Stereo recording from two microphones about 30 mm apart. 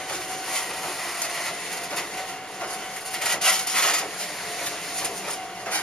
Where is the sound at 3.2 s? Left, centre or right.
Centre.